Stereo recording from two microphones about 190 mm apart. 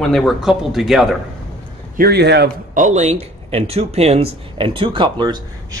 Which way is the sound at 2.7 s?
40° right (ahead or behind).